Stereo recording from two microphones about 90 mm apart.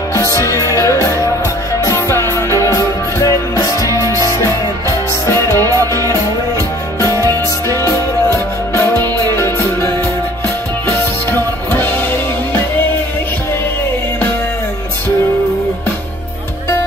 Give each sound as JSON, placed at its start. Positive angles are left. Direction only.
{"t": 0.1, "sound": "music", "side_deg": 35}